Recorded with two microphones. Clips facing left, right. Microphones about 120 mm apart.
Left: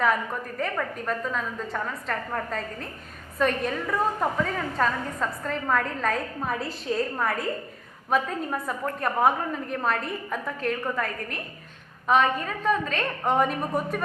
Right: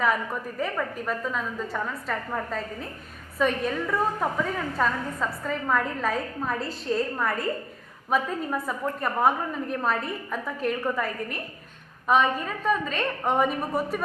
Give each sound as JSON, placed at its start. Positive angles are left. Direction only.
{"t": 0.0, "sound": "a woman's voice", "side_deg": 0}